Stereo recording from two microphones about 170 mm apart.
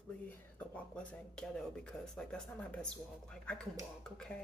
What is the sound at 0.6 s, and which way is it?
Speech, 5° left (ahead or behind).